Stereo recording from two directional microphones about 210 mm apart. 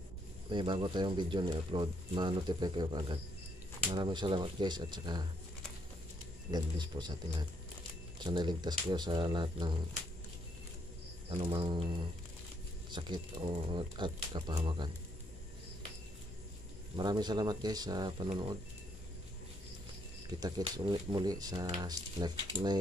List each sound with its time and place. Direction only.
0.5 s speech: 20° right (ahead or behind)
6.5 s speech: 20° right (ahead or behind)
11.2 s speech: 25° right (ahead or behind)
12.9 s speech: 20° right (ahead or behind)
16.9 s speech: 20° right (ahead or behind)
20.2 s speech: 20° right (ahead or behind)